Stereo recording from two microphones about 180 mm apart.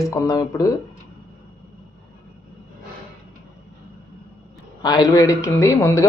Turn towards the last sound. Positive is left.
turn(degrees=15)  # may be behind; listen again after turning